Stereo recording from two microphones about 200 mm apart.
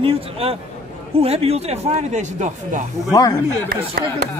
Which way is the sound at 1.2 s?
30° right (ahead or behind).